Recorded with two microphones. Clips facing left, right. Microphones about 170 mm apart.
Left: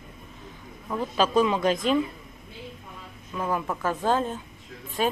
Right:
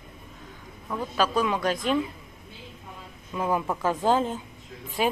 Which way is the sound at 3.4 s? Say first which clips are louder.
Right 2 dB; 15° right (ahead or behind).